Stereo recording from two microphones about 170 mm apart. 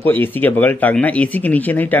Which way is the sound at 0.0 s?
10° left (ahead or behind).